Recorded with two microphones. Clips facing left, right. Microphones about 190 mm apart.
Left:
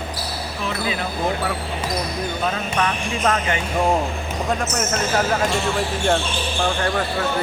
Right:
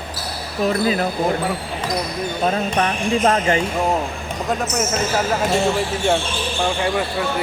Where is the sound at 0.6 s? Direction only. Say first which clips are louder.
Right 8 dB; 40° right (ahead or behind).